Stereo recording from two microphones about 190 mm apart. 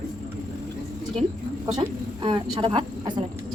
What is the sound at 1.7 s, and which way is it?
A woman's voice, 25° right (ahead or behind).